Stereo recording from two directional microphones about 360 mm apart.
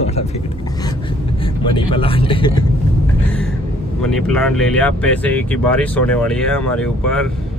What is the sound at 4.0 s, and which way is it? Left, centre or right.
Speech, centre.